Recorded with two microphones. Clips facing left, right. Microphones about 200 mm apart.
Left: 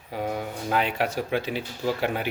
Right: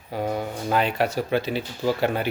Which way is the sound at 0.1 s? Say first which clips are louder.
Right 3 dB; 40° right (ahead or behind).